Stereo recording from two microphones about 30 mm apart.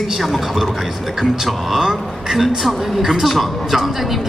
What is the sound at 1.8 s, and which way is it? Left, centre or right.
Speech, centre.